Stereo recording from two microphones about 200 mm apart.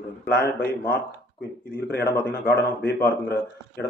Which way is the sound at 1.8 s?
50° left (ahead or behind).